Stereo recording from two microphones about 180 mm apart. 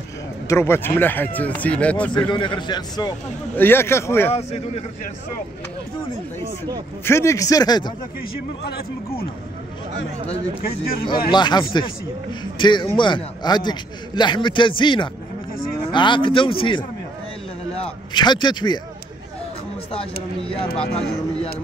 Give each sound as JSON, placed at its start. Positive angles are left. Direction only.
{"t": 0.5, "sound": "speech", "side_deg": 15}
{"t": 2.2, "sound": "a man's voice", "side_deg": 25}
{"t": 3.5, "sound": "speech", "side_deg": 10}
{"t": 4.3, "sound": "speech", "side_deg": 35}
{"t": 7.1, "sound": "a man's voice", "side_deg": 15}
{"t": 11.2, "sound": "a man's voice", "side_deg": 25}
{"t": 18.1, "sound": "a man's voice", "side_deg": 25}
{"t": 20.7, "sound": "speech", "side_deg": 5}